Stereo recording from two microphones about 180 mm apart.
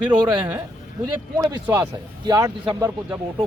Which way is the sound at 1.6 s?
10° right (ahead or behind).